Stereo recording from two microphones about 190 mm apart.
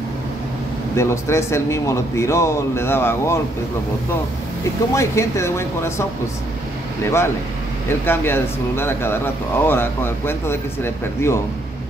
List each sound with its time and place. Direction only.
0.9 s speech: 15° left (ahead or behind)
4.9 s speech: 15° left (ahead or behind)
8.0 s speech: 10° left (ahead or behind)